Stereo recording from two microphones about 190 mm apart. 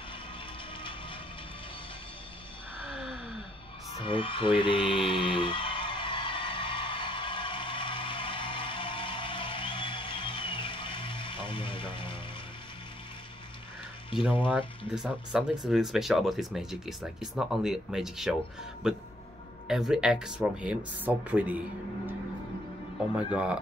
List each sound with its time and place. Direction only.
4.0 s a sound: 25° left (ahead or behind)
14.1 s speech: 5° right (ahead or behind)
23.1 s speech: 5° right (ahead or behind)